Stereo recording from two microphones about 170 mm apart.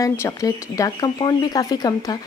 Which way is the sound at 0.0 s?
20° left (ahead or behind).